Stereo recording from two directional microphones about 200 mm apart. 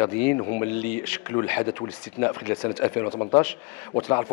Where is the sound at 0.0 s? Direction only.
10° left (ahead or behind).